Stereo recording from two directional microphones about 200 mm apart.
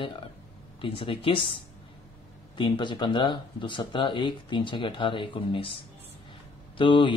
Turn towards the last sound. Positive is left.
turn(degrees=25)  # may be behind; listen again after turning